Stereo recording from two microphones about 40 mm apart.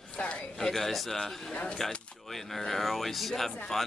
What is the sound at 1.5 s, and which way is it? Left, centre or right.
Speech, left.